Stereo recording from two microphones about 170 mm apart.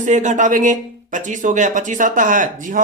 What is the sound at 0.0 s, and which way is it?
Speech, 45° right (ahead or behind).